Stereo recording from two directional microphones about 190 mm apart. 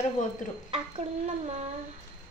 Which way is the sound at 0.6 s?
35° right (ahead or behind).